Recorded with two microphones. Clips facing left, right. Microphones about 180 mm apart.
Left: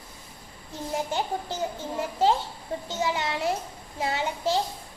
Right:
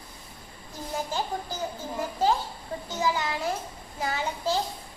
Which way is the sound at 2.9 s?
25° left (ahead or behind).